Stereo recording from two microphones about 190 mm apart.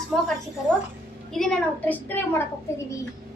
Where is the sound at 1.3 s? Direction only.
Centre (ahead or behind).